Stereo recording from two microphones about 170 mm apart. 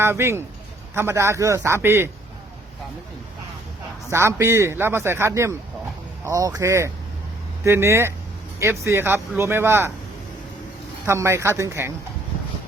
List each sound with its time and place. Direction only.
0.0 s speech: 15° right (ahead or behind)
4.1 s speech: 15° right (ahead or behind)
11.0 s speech: 15° right (ahead or behind)